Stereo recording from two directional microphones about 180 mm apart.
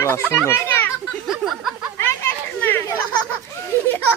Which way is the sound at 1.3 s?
Centre (ahead or behind).